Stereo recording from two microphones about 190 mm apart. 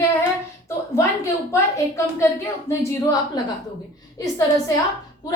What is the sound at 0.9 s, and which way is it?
A woman's voice, 15° left (ahead or behind).